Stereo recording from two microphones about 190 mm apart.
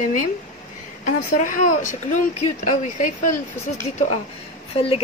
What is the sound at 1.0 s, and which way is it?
Speech, 45° left (ahead or behind).